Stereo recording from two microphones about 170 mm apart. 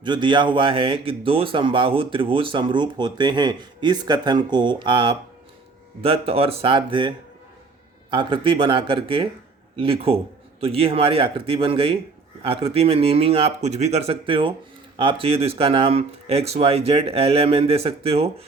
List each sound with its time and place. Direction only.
0.0 s speech: 25° right (ahead or behind)
8.1 s speech: 30° right (ahead or behind)